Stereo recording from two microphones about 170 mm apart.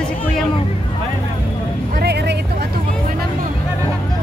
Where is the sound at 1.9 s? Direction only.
75° right (ahead or behind).